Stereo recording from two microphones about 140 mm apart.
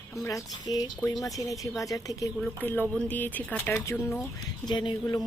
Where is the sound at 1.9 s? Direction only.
25° left (ahead or behind).